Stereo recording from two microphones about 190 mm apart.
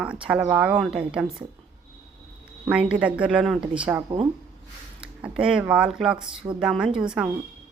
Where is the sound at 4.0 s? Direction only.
25° right (ahead or behind).